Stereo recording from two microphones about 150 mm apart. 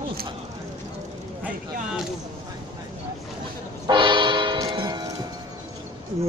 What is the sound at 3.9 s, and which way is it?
Music, 30° right (ahead or behind).